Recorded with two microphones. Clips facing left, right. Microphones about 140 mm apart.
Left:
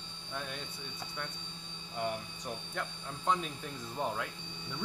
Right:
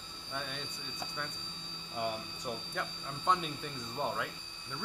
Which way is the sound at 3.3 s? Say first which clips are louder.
Even; centre (ahead or behind).